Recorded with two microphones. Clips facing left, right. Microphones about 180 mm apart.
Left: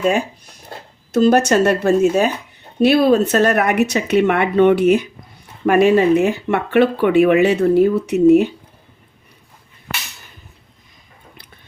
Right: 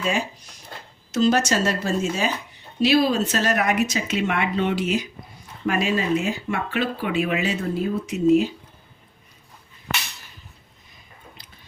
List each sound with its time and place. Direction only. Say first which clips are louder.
0.0 s speech: left 7 dB; 55° left (ahead or behind)